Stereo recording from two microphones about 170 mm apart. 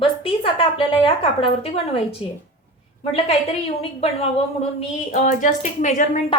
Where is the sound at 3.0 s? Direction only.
35° left (ahead or behind).